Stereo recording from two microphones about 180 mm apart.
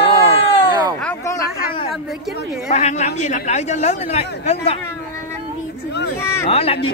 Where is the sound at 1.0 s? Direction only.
15° left (ahead or behind).